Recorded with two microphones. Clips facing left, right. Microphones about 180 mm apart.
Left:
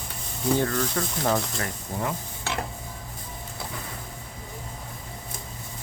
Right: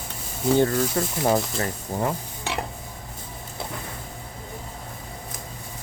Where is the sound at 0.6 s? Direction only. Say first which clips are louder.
Right 4 dB; 30° right (ahead or behind).